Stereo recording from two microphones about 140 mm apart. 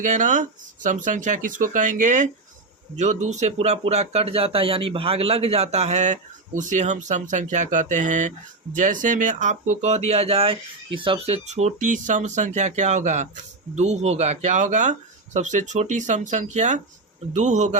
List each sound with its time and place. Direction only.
0.0 s speech: 60° right (ahead or behind)